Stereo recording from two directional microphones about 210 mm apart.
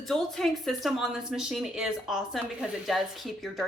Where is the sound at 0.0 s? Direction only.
Centre (ahead or behind).